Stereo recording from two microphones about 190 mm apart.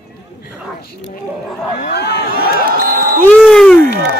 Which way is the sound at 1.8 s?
60° left (ahead or behind).